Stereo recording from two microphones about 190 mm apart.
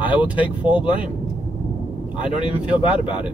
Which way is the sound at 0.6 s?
5° right (ahead or behind).